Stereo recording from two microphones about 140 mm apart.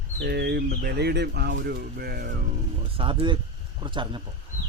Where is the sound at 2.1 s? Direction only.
90° right.